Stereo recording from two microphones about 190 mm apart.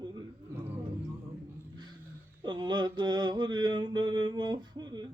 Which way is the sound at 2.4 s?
25° right (ahead or behind).